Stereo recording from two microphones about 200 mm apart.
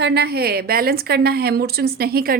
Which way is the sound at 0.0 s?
55° right (ahead or behind).